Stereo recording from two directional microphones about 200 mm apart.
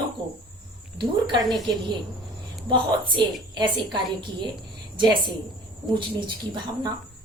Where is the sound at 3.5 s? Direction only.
20° right (ahead or behind).